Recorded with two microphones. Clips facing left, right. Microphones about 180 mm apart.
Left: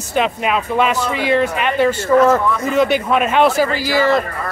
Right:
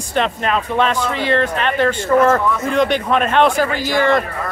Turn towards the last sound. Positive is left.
turn(degrees=5)  # may be behind; listen again after turning